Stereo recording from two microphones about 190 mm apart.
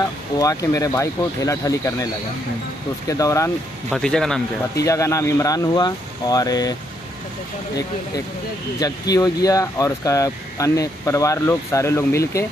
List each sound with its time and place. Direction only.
0.4 s speech: 15° left (ahead or behind)
3.1 s speech: 15° left (ahead or behind)
3.9 s speech: 5° left (ahead or behind)
4.7 s speech: 15° left (ahead or behind)
8.7 s speech: 20° left (ahead or behind)